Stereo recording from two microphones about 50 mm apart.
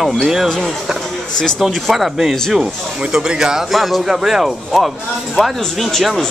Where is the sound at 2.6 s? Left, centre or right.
Centre.